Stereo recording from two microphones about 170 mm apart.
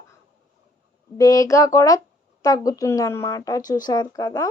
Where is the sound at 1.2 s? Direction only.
20° left (ahead or behind).